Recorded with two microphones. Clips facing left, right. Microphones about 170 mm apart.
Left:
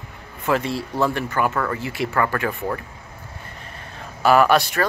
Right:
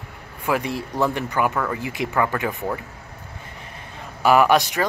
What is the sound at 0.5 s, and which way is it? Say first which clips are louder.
A man's voice: left 1 dB; 15° right (ahead or behind).